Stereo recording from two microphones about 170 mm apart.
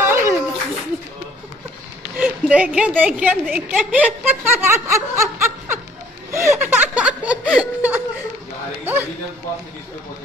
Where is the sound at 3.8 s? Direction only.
10° right (ahead or behind).